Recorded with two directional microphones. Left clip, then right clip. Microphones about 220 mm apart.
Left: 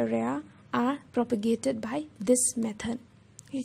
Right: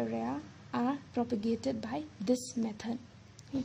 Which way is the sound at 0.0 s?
20° left (ahead or behind).